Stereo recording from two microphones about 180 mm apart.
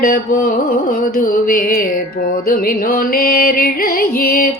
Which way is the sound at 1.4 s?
55° left (ahead or behind).